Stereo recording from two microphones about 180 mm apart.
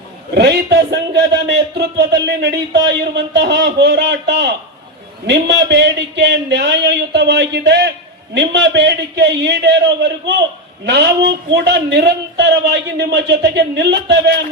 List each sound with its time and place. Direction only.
0.3 s a man's voice: 70° right (ahead or behind)